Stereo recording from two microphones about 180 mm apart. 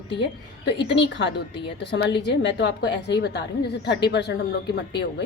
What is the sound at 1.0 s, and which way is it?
Speech, 85° left.